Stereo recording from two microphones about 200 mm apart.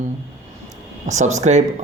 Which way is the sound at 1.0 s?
35° right (ahead or behind).